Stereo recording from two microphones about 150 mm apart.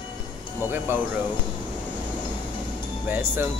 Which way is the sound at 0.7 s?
15° right (ahead or behind).